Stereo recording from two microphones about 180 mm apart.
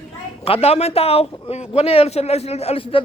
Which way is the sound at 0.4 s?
35° left (ahead or behind).